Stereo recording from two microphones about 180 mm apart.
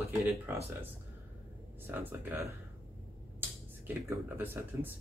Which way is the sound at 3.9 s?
10° right (ahead or behind).